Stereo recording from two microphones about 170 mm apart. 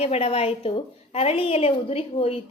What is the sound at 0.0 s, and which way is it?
A woman's voice, 35° left (ahead or behind).